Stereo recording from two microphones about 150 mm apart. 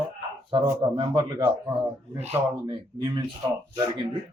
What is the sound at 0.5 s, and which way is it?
Speech, 30° right (ahead or behind).